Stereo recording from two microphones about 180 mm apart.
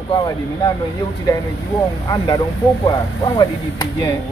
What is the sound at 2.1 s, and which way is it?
Speech, 25° left (ahead or behind).